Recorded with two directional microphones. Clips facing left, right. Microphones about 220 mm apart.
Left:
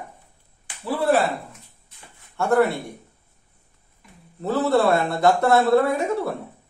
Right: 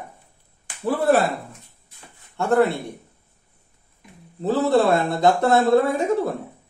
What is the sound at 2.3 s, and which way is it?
Speech, 20° right (ahead or behind).